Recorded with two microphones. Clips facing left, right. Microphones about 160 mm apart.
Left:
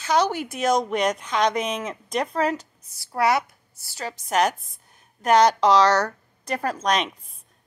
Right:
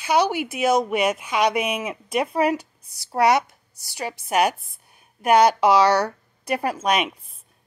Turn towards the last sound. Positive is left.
turn(degrees=-10)  # may be behind; listen again after turning